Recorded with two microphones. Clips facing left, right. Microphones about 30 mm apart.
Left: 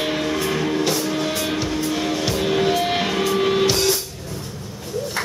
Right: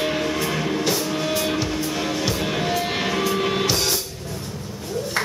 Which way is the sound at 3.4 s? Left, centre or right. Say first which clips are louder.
Left 4 dB; centre.